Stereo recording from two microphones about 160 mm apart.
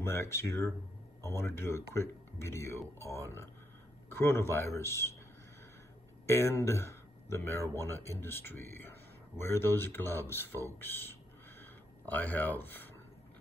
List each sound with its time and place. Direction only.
0.0 s speech: 15° left (ahead or behind)
6.2 s speech: 15° left (ahead or behind)
11.6 s a sound: 10° left (ahead or behind)